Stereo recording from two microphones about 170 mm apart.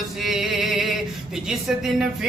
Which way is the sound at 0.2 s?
Centre (ahead or behind).